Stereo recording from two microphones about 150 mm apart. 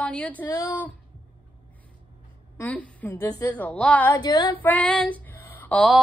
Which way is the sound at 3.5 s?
10° left (ahead or behind).